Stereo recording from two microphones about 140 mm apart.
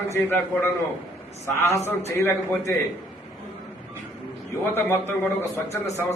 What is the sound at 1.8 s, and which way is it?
Speech, 20° left (ahead or behind).